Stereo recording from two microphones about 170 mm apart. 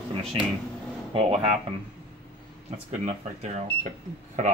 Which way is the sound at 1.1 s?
35° right (ahead or behind).